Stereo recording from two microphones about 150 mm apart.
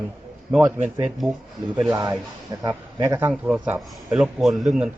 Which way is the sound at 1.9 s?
20° right (ahead or behind).